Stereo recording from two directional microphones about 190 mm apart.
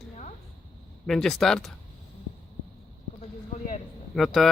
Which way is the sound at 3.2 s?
40° left (ahead or behind).